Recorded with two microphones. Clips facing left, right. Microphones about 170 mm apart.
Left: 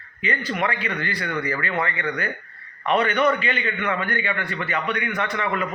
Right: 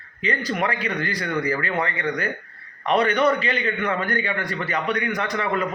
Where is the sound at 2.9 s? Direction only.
35° right (ahead or behind).